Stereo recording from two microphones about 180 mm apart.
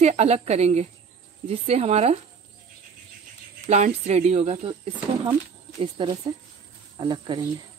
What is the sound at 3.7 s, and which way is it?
A woman's voice, 40° right (ahead or behind).